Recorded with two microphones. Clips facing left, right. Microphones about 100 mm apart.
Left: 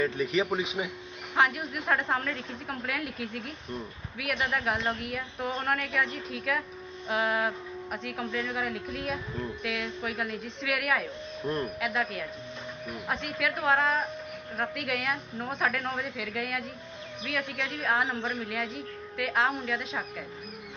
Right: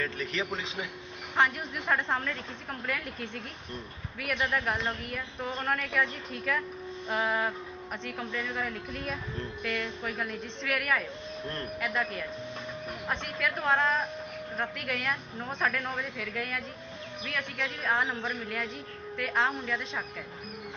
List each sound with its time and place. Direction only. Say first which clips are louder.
0.0 s a man's voice: left 6 dB; 15° left (ahead or behind)
1.4 s a woman's voice: left 1 dB; 5° left (ahead or behind)
11.4 s a man's voice: left 8 dB; 15° left (ahead or behind)
11.8 s a woman's voice: left 1 dB; centre (ahead or behind)